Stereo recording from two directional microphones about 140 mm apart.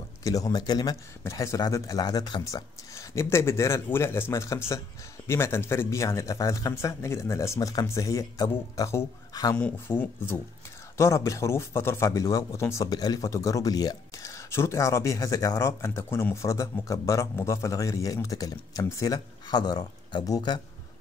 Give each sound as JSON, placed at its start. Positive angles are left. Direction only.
{"t": 0.2, "sound": "speech", "side_deg": 25}
{"t": 9.6, "sound": "speech", "side_deg": 15}